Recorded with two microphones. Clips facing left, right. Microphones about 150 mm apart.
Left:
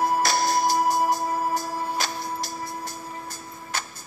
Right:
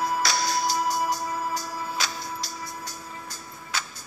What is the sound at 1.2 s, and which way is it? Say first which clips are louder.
Music: left 4 dB; 35° left (ahead or behind).